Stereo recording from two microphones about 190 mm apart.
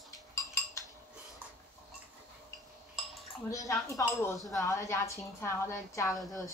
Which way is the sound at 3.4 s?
15° left (ahead or behind).